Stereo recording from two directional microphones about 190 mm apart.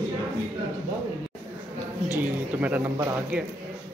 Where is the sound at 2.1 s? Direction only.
10° right (ahead or behind).